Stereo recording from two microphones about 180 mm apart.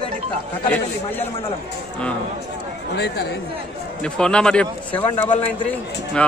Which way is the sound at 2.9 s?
65° left (ahead or behind).